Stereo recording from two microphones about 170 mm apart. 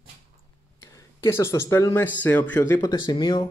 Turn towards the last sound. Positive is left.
turn(degrees=25)  # may be behind; listen again after turning